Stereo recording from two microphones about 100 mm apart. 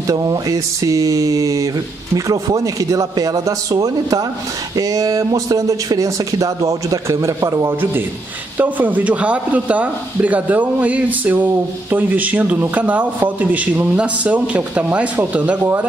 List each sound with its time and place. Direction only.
0.0 s a man's voice: 40° right (ahead or behind); by 15.7 s 15° right (ahead or behind)